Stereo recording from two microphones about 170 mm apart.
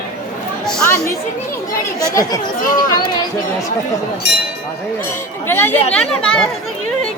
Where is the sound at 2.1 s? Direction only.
20° left (ahead or behind).